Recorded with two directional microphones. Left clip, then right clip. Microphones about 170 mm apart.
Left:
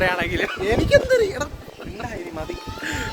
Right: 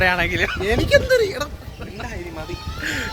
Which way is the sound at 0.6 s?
20° left (ahead or behind).